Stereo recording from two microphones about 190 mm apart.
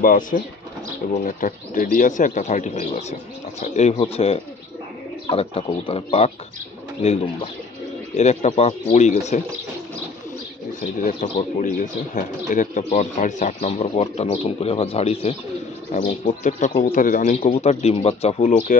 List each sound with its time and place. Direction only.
0.0 s speech: 45° left (ahead or behind); by 6.3 s 30° left (ahead or behind)
8.2 s speech: 35° left (ahead or behind)
10.8 s speech: 45° left (ahead or behind)